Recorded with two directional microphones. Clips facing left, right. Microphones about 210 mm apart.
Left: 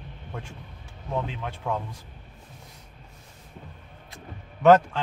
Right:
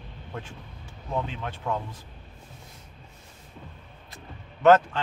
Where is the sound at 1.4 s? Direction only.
5° left (ahead or behind).